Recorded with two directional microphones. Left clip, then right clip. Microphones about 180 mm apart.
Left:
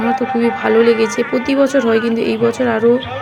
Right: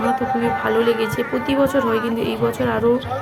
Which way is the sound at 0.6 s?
20° left (ahead or behind).